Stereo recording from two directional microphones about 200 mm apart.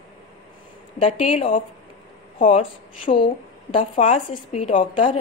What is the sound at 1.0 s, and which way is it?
A woman's voice, 30° left (ahead or behind).